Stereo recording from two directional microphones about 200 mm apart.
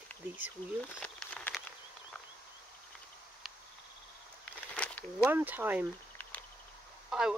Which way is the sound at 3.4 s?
Centre (ahead or behind).